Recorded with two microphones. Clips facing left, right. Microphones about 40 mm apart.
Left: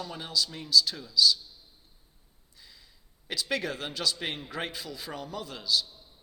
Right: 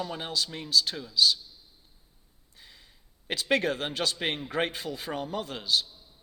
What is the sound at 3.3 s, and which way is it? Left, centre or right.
A man's voice, right.